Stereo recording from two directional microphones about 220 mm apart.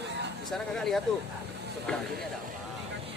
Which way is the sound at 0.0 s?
50° right (ahead or behind).